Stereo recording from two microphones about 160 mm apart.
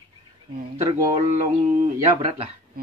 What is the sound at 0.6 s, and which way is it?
A man's voice, 50° right (ahead or behind).